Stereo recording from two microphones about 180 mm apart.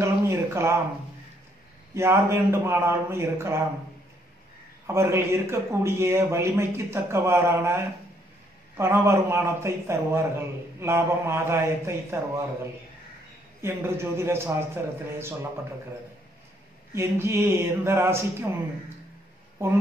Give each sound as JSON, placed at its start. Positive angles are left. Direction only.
{"t": 0.0, "sound": "speech", "side_deg": -15}
{"t": 2.0, "sound": "speech", "side_deg": -15}
{"t": 4.8, "sound": "speech", "side_deg": -15}
{"t": 13.6, "sound": "speech", "side_deg": -15}
{"t": 16.9, "sound": "speech", "side_deg": -15}
{"t": 19.6, "sound": "speech", "side_deg": -15}